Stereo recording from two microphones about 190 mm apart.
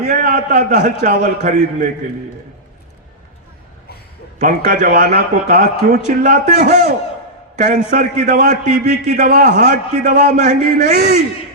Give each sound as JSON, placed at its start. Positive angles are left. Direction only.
{"t": 0.1, "sound": "a man's voice", "side_deg": -45}
{"t": 4.4, "sound": "a man's voice", "side_deg": -45}